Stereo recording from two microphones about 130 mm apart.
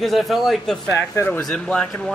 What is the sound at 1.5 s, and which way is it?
Speech, 5° left (ahead or behind).